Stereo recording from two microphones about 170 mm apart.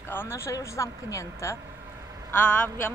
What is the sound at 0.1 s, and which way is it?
Speech, 15° left (ahead or behind).